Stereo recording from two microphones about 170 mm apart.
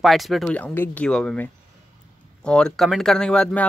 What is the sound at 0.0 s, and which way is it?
Speech, centre (ahead or behind).